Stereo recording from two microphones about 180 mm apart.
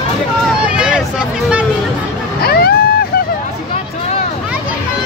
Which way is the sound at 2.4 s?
60° left (ahead or behind).